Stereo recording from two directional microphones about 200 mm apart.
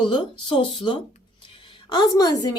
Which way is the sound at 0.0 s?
25° left (ahead or behind).